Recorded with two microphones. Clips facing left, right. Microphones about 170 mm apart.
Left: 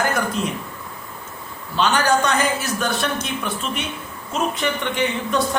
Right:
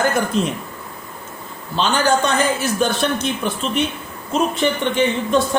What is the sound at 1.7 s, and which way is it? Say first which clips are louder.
Speech: right 1 dB; 30° right (ahead or behind).